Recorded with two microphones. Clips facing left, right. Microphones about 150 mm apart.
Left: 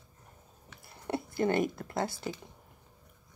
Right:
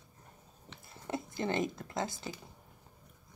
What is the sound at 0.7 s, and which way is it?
Chewing, 20° right (ahead or behind).